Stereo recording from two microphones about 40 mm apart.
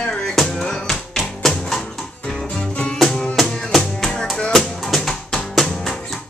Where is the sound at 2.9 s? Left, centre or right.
Centre.